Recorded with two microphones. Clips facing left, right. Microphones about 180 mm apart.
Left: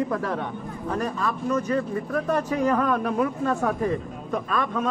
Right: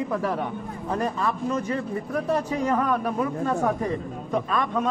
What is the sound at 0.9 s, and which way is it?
Speech, 25° right (ahead or behind).